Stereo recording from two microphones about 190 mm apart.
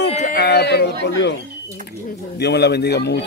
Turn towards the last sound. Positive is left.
turn(degrees=60)  # may be behind; listen again after turning